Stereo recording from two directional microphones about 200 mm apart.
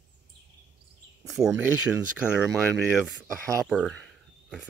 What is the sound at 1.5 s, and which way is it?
Speech, 5° right (ahead or behind).